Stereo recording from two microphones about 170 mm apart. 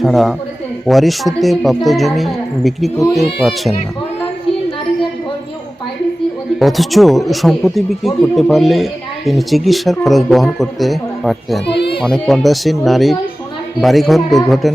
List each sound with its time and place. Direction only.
0.0 s speech: centre (ahead or behind)
6.6 s speech: centre (ahead or behind)
11.6 s a sound: 80° left
12.0 s speech: centre (ahead or behind)